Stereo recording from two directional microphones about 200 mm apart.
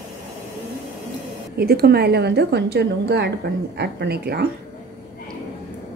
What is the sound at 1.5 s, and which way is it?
A woman's voice, 50° right (ahead or behind).